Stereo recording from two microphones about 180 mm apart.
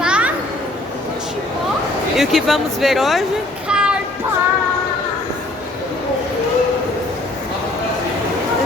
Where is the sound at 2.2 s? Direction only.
Centre (ahead or behind).